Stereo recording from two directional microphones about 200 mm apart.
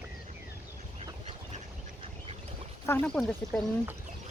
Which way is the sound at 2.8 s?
10° left (ahead or behind).